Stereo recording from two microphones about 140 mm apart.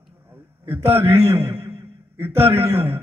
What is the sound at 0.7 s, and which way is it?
A man's voice, 15° right (ahead or behind).